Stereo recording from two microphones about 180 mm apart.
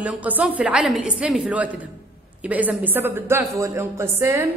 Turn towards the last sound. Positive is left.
turn(degrees=-15)  # may be behind; listen again after turning